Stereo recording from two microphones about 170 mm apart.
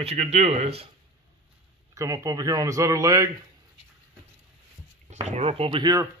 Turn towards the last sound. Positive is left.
turn(degrees=-30)  # may be behind; listen again after turning